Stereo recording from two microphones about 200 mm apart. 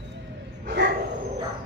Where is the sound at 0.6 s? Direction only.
60° right (ahead or behind).